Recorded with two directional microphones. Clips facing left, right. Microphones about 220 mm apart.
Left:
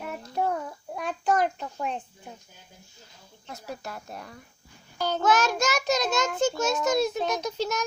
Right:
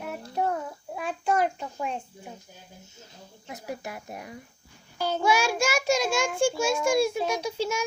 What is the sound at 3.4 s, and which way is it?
Child singing, 15° right (ahead or behind).